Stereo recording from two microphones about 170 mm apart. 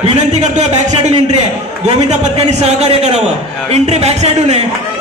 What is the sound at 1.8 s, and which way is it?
A man's voice, 40° right (ahead or behind).